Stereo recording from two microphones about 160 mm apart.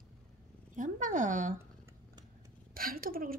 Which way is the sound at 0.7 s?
55° right (ahead or behind).